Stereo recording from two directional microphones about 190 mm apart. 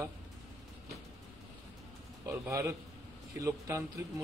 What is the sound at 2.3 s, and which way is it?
Speech, 15° right (ahead or behind).